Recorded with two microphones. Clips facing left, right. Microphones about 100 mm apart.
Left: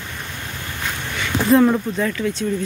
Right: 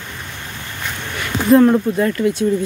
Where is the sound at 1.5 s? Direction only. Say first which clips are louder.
Right 4 dB; centre (ahead or behind).